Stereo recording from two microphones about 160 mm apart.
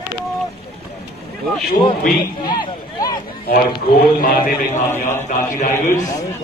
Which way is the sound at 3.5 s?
65° left (ahead or behind).